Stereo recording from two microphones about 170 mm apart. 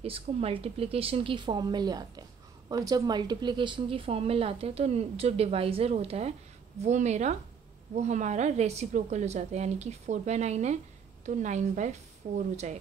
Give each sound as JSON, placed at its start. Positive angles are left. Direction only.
{"t": 0.0, "sound": "a woman's voice", "side_deg": -35}